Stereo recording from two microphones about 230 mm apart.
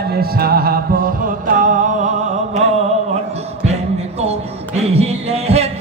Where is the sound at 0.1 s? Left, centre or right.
Right.